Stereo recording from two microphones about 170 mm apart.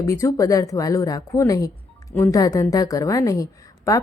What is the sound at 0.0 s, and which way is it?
A woman's voice, 20° left (ahead or behind).